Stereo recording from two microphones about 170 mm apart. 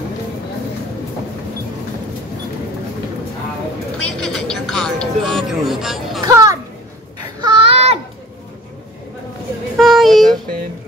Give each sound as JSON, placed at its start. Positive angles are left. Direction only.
{"t": 4.0, "sound": "speech", "side_deg": 5}
{"t": 6.2, "sound": "children playing", "side_deg": -20}
{"t": 7.4, "sound": "babbling", "side_deg": -30}
{"t": 9.8, "sound": "child singing", "side_deg": 0}